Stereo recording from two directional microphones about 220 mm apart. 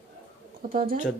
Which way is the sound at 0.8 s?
40° right (ahead or behind).